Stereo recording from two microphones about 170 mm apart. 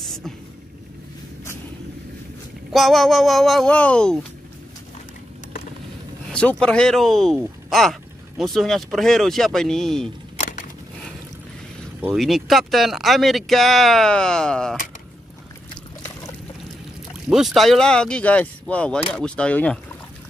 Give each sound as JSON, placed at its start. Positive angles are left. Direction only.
{"t": 0.0, "sound": "vehicle", "side_deg": 0}
{"t": 2.7, "sound": "speech", "side_deg": 0}
{"t": 6.3, "sound": "speech", "side_deg": 5}
{"t": 10.3, "sound": "a sound", "side_deg": 45}
{"t": 12.2, "sound": "speech", "side_deg": 0}
{"t": 17.3, "sound": "speech", "side_deg": 0}